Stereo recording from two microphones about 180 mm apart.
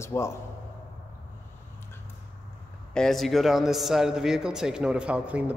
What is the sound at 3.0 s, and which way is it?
A man's voice, centre (ahead or behind).